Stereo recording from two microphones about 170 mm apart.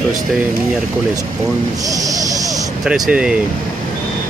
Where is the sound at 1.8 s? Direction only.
20° right (ahead or behind).